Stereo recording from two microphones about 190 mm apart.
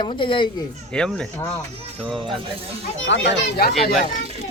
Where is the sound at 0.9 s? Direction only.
5° left (ahead or behind).